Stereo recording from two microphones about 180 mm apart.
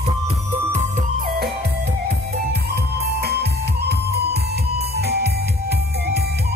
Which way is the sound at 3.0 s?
60° right (ahead or behind).